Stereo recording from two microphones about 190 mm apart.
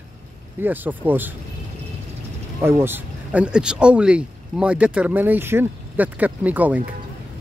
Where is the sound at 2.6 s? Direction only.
10° right (ahead or behind).